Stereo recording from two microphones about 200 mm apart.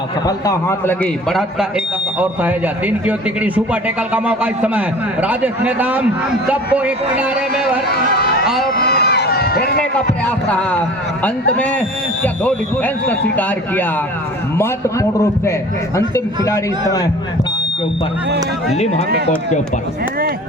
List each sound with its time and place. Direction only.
0.3 s speech: 15° left (ahead or behind); by 7.3 s 5° right (ahead or behind)
8.7 s run: 50° left (ahead or behind)
10.2 s a man's voice: 5° left (ahead or behind)